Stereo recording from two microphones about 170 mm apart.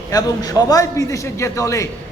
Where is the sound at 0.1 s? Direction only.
20° left (ahead or behind).